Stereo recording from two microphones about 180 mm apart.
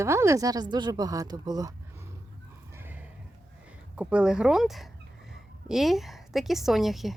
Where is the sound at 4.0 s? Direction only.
5° right (ahead or behind).